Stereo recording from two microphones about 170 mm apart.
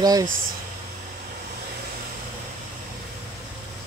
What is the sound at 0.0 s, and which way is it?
Speech, 20° right (ahead or behind).